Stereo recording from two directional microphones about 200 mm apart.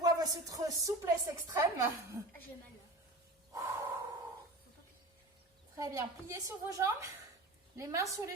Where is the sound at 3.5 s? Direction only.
15° right (ahead or behind).